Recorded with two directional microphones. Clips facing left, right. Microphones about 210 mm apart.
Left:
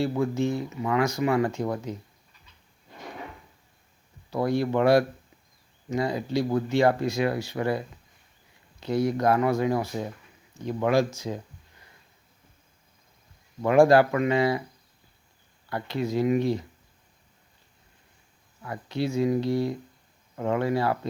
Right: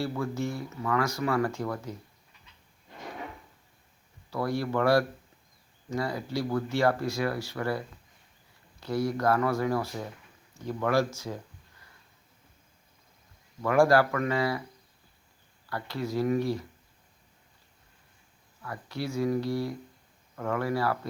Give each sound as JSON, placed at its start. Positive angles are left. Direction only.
{"t": 0.0, "sound": "speech", "side_deg": 20}
{"t": 4.3, "sound": "speech", "side_deg": 20}
{"t": 13.6, "sound": "speech", "side_deg": 20}
{"t": 15.7, "sound": "speech", "side_deg": 20}
{"t": 18.6, "sound": "speech", "side_deg": 20}